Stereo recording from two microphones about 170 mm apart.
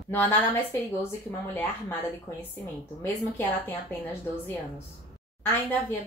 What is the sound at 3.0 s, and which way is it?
Speech, 10° left (ahead or behind).